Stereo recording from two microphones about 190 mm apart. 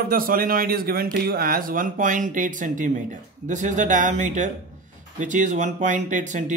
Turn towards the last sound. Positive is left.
turn(degrees=-40)  # may be behind; listen again after turning